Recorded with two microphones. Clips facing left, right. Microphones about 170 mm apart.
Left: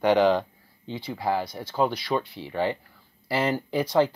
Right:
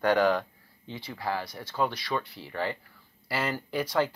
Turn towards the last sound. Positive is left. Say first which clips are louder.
# left 5 dB
turn(degrees=25)  # may be behind; listen again after turning